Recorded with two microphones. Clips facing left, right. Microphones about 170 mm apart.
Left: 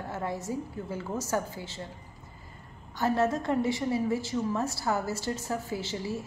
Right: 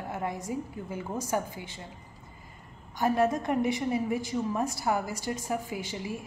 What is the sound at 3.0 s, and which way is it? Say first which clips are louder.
A woman's voice: right 1 dB; 15° right (ahead or behind).